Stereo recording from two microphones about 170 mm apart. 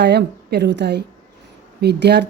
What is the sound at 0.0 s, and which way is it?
A woman's voice, 75° right (ahead or behind).